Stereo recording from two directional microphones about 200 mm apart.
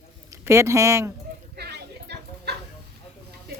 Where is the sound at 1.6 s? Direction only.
55° right (ahead or behind).